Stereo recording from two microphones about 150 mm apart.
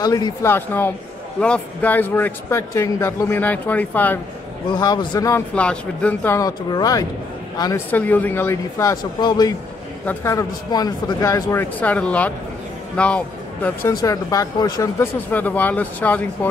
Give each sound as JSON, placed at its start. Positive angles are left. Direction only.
{"t": 0.0, "sound": "speech", "side_deg": 25}
{"t": 4.6, "sound": "speech", "side_deg": 30}
{"t": 5.5, "sound": "speech", "side_deg": 5}
{"t": 6.3, "sound": "speech", "side_deg": 25}
{"t": 7.9, "sound": "speech", "side_deg": 10}
{"t": 9.2, "sound": "speech", "side_deg": 30}
{"t": 11.8, "sound": "speech", "side_deg": 10}
{"t": 13.8, "sound": "speech", "side_deg": 25}
{"t": 15.3, "sound": "speech", "side_deg": 10}